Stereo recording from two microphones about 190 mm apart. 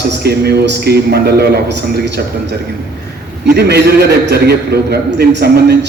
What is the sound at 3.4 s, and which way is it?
A man's voice, 60° right (ahead or behind).